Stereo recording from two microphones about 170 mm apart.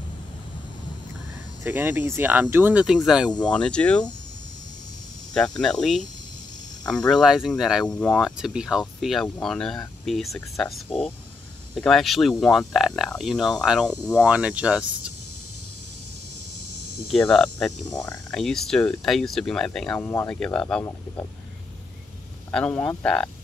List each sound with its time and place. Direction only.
1.6 s speech: 15° right (ahead or behind)
3.3 s speech: 25° left (ahead or behind)
3.5 s speech: 5° left (ahead or behind)
5.3 s speech: 5° left (ahead or behind)
7.1 s speech: centre (ahead or behind)
10.9 s speech: 35° left (ahead or behind)
11.7 s speech: centre (ahead or behind)
16.5 s cricket: 90° right
17.3 s speech: centre (ahead or behind)
17.8 s speech: 20° left (ahead or behind)
18.3 s speech: centre (ahead or behind)
22.5 s speech: 5° left (ahead or behind)